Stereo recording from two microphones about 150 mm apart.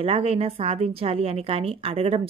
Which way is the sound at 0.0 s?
40° right (ahead or behind).